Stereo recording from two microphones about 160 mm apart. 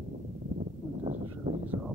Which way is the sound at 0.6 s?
45° right (ahead or behind).